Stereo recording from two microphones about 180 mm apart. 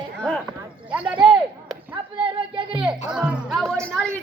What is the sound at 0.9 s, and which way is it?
Speech, 5° right (ahead or behind).